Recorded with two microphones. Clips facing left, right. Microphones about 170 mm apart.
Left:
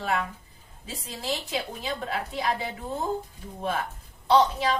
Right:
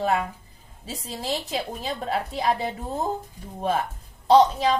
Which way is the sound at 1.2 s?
40° right (ahead or behind).